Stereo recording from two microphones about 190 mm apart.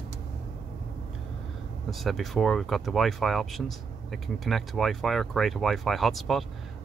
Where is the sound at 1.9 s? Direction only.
Centre (ahead or behind).